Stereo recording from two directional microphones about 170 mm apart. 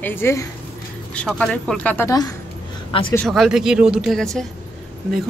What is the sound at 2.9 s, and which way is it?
Speech, 30° left (ahead or behind).